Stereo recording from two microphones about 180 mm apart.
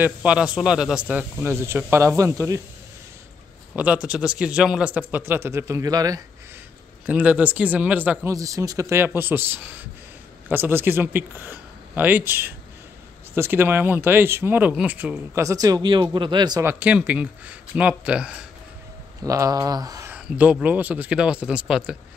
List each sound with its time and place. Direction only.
0.0 s speech: 5° right (ahead or behind)
3.7 s speech: 5° right (ahead or behind)
7.1 s speech: 10° right (ahead or behind); by 16.6 s 25° right (ahead or behind)
16.6 s speech: 10° right (ahead or behind)
19.2 s speech: 20° right (ahead or behind)
20.1 s speech: 10° right (ahead or behind)